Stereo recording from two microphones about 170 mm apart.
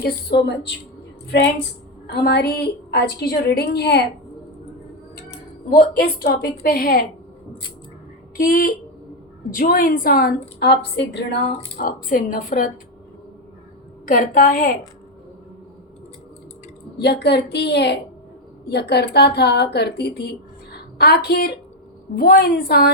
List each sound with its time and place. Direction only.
0.0 s a woman's voice: 70° left (ahead or behind)
2.0 s a woman's voice: 75° left (ahead or behind)
5.7 s a woman's voice: 65° left (ahead or behind)
8.4 s a woman's voice: 55° left (ahead or behind); by 11.3 s 80° left
11.8 s a woman's voice: 55° left (ahead or behind)
14.0 s a woman's voice: 50° left (ahead or behind)
17.0 s a woman's voice: 75° left (ahead or behind)
22.3 s a woman's voice: 55° left (ahead or behind)